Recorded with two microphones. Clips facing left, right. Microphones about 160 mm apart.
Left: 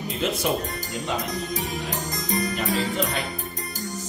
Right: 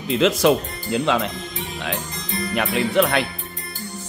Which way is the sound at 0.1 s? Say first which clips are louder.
Right 9 dB; 90° right.